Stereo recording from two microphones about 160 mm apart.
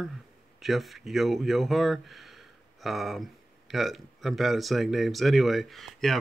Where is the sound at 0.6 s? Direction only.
Centre (ahead or behind).